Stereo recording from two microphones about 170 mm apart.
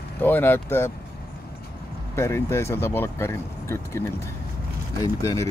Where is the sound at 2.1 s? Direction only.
15° left (ahead or behind).